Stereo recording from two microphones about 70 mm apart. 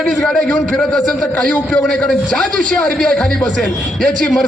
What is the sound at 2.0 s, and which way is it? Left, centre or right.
A man's voice, centre.